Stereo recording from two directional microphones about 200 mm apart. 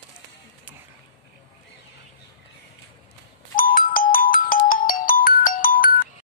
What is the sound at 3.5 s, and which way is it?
Ringtone, 45° left (ahead or behind).